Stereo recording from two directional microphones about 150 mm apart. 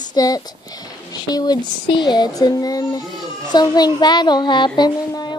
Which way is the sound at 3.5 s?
25° left (ahead or behind).